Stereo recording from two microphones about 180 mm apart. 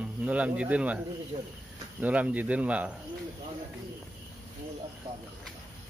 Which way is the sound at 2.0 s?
10° right (ahead or behind).